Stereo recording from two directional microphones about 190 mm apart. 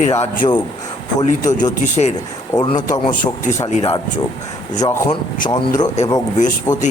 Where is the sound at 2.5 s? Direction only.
20° left (ahead or behind).